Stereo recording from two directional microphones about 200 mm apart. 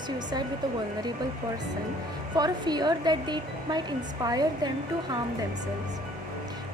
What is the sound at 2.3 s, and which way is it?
A woman's voice, 20° right (ahead or behind).